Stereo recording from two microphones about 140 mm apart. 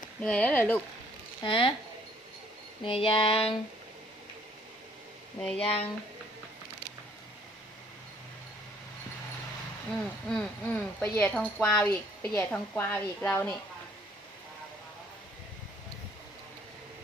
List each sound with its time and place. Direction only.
0.2 s a woman's voice: 10° left (ahead or behind)
1.5 s a sound: 35° left (ahead or behind)
2.8 s a sound: 40° left (ahead or behind)
5.4 s speech: 5° left (ahead or behind)
5.6 s speech: 45° left (ahead or behind)
10.2 s a woman's voice: 10° left (ahead or behind)